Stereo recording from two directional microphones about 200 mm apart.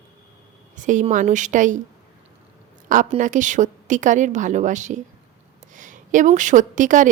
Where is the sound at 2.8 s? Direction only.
40° right (ahead or behind).